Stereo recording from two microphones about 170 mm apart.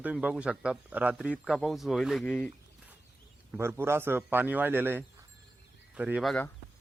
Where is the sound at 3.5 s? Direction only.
15° right (ahead or behind).